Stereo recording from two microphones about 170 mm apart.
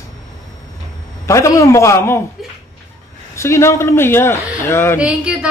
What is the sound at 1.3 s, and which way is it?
Speech, 20° left (ahead or behind).